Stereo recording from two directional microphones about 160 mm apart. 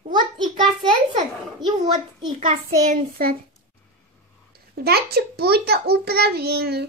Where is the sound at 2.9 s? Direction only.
65° right (ahead or behind).